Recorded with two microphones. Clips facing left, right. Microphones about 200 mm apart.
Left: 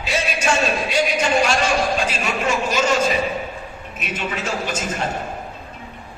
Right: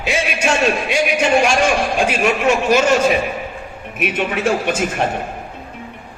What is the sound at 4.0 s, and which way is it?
Speech, 60° right (ahead or behind).